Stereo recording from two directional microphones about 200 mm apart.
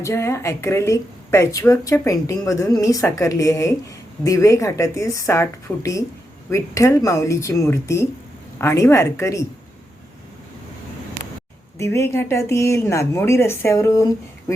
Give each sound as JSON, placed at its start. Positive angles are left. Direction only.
{"t": 0.0, "sound": "speech", "side_deg": 15}
{"t": 11.8, "sound": "speech", "side_deg": 15}